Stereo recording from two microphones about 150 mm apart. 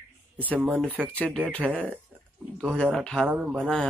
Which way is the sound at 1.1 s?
5° left (ahead or behind).